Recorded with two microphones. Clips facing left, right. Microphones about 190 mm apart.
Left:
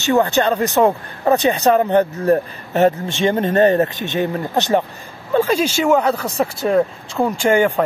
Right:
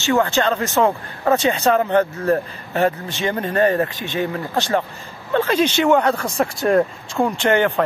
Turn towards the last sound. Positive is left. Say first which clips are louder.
# left 2 dB
turn(degrees=10)  # may be behind; listen again after turning